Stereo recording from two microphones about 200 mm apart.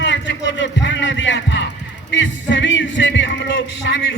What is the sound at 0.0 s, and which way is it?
Heart sounds, 60° left (ahead or behind).